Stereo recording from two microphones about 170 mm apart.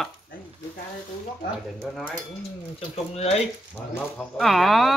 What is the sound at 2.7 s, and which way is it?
Speech, 35° left (ahead or behind).